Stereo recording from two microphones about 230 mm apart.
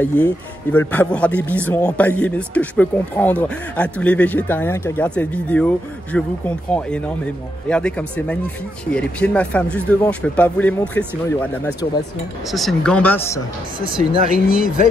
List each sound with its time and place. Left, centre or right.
0.0 s speech: centre
14.0 s speech: right